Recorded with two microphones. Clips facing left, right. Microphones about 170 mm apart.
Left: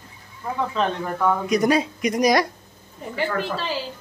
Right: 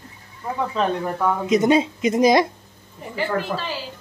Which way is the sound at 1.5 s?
25° right (ahead or behind).